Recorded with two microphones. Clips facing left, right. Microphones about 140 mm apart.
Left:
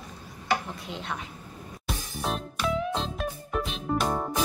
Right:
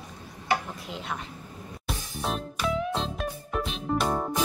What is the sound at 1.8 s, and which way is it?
Music, centre (ahead or behind).